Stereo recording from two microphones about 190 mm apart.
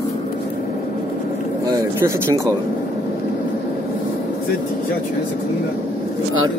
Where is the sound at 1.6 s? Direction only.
20° right (ahead or behind).